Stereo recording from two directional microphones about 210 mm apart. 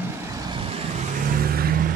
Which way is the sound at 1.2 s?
45° right (ahead or behind).